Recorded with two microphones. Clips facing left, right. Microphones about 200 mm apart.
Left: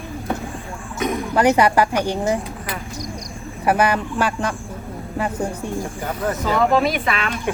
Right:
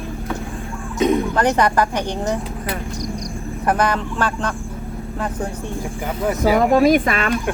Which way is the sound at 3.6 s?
10° left (ahead or behind).